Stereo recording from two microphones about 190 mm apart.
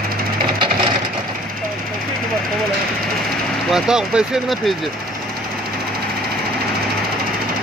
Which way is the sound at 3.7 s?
5° right (ahead or behind).